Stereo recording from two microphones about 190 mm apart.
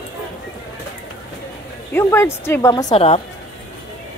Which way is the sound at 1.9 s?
10° left (ahead or behind).